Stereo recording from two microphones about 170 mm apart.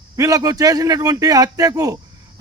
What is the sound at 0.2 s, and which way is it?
Speech, 20° right (ahead or behind).